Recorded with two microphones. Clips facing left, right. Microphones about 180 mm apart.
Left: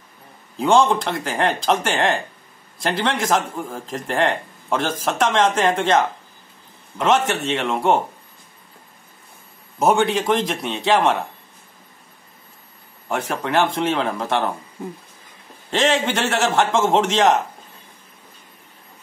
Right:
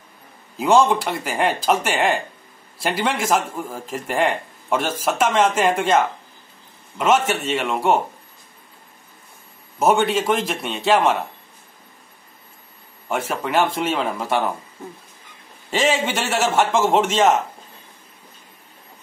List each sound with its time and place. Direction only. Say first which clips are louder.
0.6 s a man's voice: even; 5° right (ahead or behind)
9.8 s a man's voice: even; centre (ahead or behind)
13.1 s a man's voice: even; centre (ahead or behind)
15.7 s a man's voice: left 1 dB; 5° right (ahead or behind)